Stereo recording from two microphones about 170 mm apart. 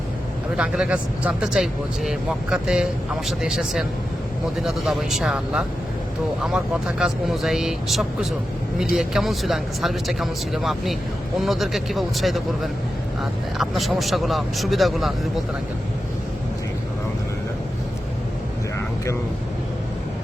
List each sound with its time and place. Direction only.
0.5 s speech: 5° right (ahead or behind)
13.6 s speech: centre (ahead or behind)